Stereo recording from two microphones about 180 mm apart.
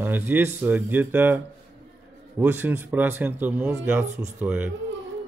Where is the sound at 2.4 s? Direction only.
10° right (ahead or behind).